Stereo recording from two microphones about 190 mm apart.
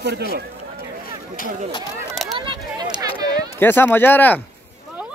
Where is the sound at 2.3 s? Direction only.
25° right (ahead or behind).